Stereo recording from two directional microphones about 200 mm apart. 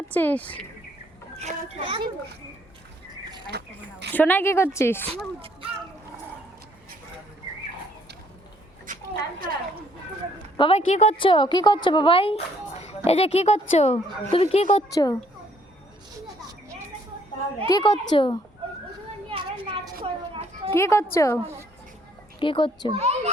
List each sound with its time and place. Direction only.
0.1 s a woman's voice: 10° left (ahead or behind)
1.4 s a child's voice: 30° right (ahead or behind)
3.5 s speech: 55° right (ahead or behind)
4.1 s a woman's voice: 10° left (ahead or behind)
10.6 s a woman's voice: 30° left (ahead or behind)
14.9 s a woman's voice: 15° left (ahead or behind)
17.7 s a woman's voice: 20° left (ahead or behind)
19.3 s a sound: 30° right (ahead or behind)
20.7 s a woman's voice: 15° left (ahead or behind)
22.4 s a woman's voice: 25° left (ahead or behind)
22.9 s a child's voice: 30° right (ahead or behind)